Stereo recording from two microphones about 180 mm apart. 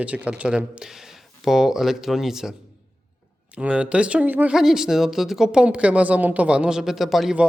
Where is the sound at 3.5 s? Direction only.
5° right (ahead or behind).